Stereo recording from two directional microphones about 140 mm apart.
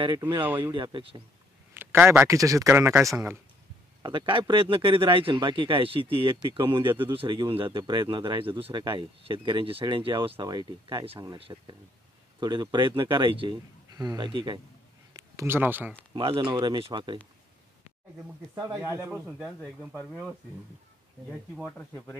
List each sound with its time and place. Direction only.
0.2 s speech: 15° right (ahead or behind)
0.7 s speech: 35° right (ahead or behind)
1.7 s speech: 15° right (ahead or behind)
4.0 s speech: 35° right (ahead or behind)
15.1 s speech: 20° right (ahead or behind)
16.1 s speech: 35° right (ahead or behind)
18.5 s speech: 15° right (ahead or behind)
19.2 s speech: centre (ahead or behind)
21.3 s speech: 5° right (ahead or behind)
21.9 s speech: 15° left (ahead or behind)